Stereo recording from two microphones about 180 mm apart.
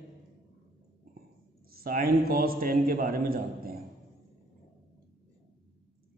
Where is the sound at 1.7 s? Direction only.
55° right (ahead or behind).